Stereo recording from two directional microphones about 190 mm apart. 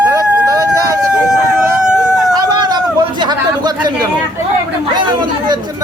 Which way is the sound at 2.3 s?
20° right (ahead or behind).